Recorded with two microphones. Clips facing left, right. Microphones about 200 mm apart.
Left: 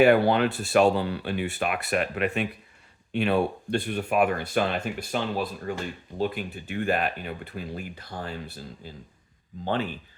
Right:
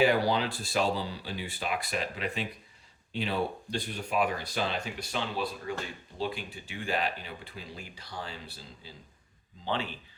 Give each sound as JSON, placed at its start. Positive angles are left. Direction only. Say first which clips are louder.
{"t": 0.0, "sound": "a man's voice", "louder": "left 7 dB", "side_deg": 60}